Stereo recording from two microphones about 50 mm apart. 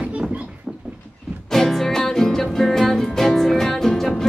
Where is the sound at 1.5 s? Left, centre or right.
Centre.